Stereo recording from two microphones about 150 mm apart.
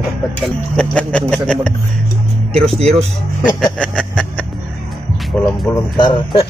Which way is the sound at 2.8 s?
45° right (ahead or behind).